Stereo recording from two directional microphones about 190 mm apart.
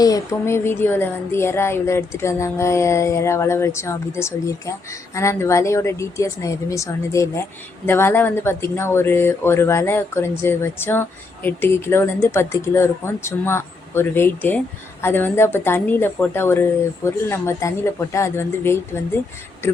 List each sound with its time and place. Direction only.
0.0 s speech: 15° left (ahead or behind)